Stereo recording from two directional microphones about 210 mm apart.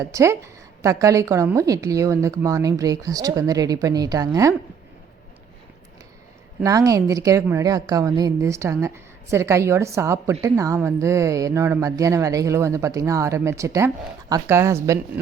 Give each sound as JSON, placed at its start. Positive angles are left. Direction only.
{"t": 0.0, "sound": "a woman's voice", "side_deg": -15}
{"t": 6.6, "sound": "a woman's voice", "side_deg": -15}